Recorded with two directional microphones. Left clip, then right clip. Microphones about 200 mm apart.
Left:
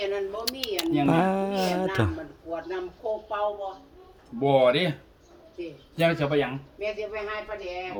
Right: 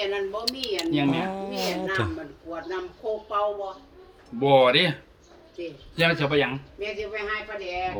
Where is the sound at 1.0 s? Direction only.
30° left (ahead or behind).